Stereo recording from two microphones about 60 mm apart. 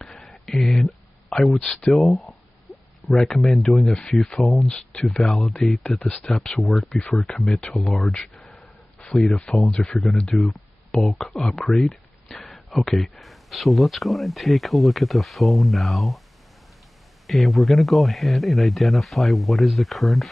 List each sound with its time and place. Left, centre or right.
0.0 s a sound: centre
1.5 s speech: centre
1.9 s speech: centre
7.7 s speech: centre
8.1 s speech: centre
12.4 s a sound: centre
13.2 s speech: centre
17.3 s speech: centre